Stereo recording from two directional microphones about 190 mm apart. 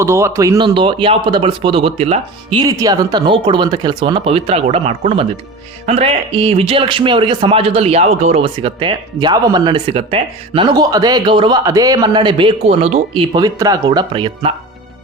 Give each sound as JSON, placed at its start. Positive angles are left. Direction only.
{"t": 0.0, "sound": "speech", "side_deg": -15}
{"t": 2.6, "sound": "speech", "side_deg": -20}